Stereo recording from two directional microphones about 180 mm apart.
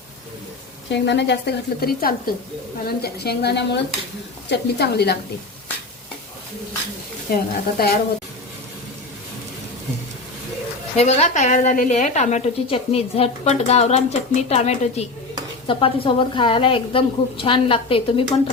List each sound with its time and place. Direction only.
0.9 s a woman's voice: 75° left (ahead or behind)
7.3 s a woman's voice: 55° left (ahead or behind)
10.9 s a woman's voice: 40° left (ahead or behind)